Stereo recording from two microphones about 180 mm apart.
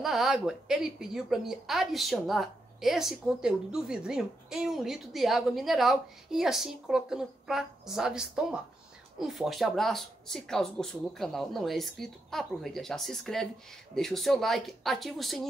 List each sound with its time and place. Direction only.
0.0 s a woman's voice: centre (ahead or behind)